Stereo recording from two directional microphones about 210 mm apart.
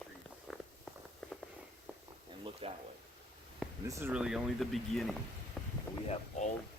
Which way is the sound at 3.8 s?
10° right (ahead or behind).